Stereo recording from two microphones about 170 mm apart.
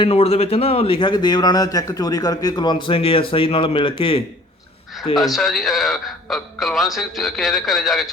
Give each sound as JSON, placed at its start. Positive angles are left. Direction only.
{"t": 0.0, "sound": "speech", "side_deg": 35}
{"t": 5.2, "sound": "a man's voice", "side_deg": 0}